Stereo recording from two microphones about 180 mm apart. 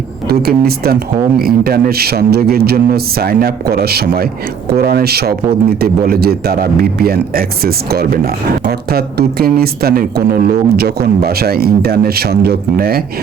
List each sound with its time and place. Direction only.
0.3 s a man's voice: 60° right (ahead or behind)